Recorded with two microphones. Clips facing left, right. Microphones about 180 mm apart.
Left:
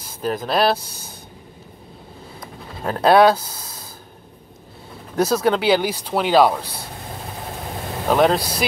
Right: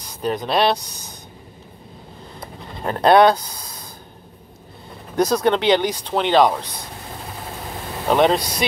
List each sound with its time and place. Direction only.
0.2 s speech: centre (ahead or behind)
0.7 s speech: 15° right (ahead or behind)
2.4 s speech: centre (ahead or behind)
5.1 s speech: 5° left (ahead or behind)
8.1 s speech: centre (ahead or behind)